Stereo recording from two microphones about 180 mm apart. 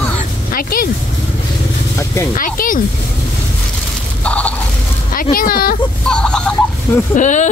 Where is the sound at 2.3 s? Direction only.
50° left (ahead or behind).